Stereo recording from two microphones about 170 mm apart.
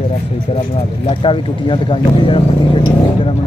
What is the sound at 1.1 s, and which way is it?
Speech, 30° left (ahead or behind).